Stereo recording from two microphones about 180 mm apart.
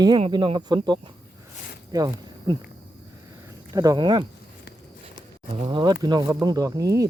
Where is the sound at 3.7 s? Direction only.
20° right (ahead or behind).